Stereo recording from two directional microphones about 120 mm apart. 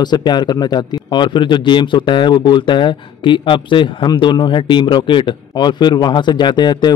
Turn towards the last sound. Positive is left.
turn(degrees=35)  # may be behind; listen again after turning